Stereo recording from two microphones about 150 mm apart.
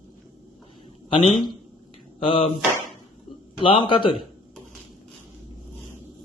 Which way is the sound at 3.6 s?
35° left (ahead or behind).